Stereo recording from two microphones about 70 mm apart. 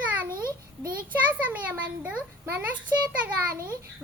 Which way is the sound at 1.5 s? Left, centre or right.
Right.